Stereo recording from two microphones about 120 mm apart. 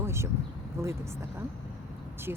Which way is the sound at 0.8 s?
25° right (ahead or behind).